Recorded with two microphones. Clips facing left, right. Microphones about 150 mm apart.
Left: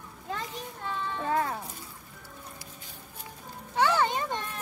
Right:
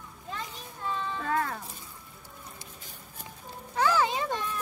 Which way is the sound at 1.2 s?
25° left (ahead or behind).